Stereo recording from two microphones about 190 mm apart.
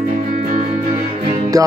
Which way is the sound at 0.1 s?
40° right (ahead or behind).